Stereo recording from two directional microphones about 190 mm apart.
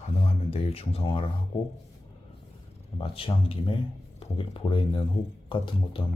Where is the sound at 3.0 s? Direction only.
25° left (ahead or behind).